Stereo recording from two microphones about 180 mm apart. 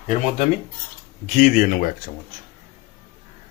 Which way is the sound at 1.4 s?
50° left (ahead or behind).